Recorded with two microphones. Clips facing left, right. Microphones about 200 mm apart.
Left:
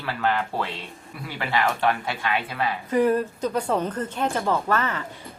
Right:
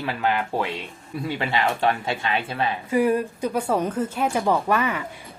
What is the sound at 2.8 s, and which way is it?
Speech, 10° right (ahead or behind).